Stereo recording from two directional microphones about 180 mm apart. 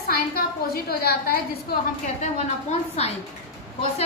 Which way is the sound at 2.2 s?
35° left (ahead or behind).